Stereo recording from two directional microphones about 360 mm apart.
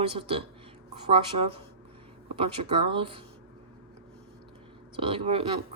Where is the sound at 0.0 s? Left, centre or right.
Centre.